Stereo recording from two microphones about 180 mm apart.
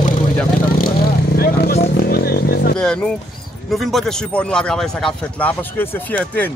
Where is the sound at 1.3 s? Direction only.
55° left (ahead or behind).